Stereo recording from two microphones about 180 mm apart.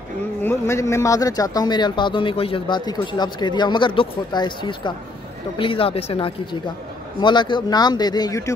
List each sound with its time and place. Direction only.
0.4 s a man's voice: 15° left (ahead or behind)